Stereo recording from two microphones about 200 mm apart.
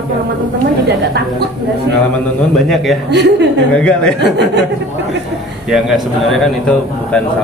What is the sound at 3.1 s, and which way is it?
Speech, 60° right (ahead or behind).